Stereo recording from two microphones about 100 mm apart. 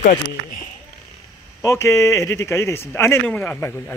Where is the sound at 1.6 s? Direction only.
30° left (ahead or behind).